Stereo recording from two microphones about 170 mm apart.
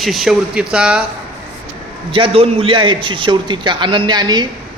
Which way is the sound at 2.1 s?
30° right (ahead or behind).